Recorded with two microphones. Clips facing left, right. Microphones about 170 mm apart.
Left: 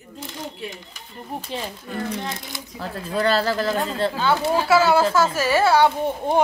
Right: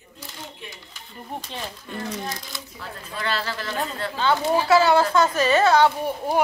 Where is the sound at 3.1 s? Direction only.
40° left (ahead or behind).